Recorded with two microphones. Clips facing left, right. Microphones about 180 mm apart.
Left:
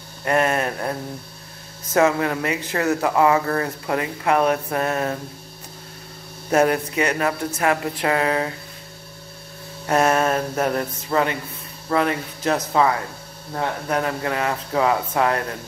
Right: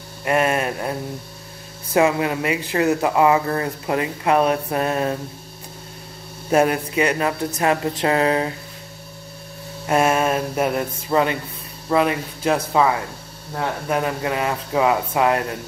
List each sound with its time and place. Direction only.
0.2 s speech: 15° right (ahead or behind)
2.0 s speech: 15° right (ahead or behind)
6.5 s speech: 20° right (ahead or behind)
9.8 s speech: 10° right (ahead or behind)
13.8 s speech: 20° right (ahead or behind)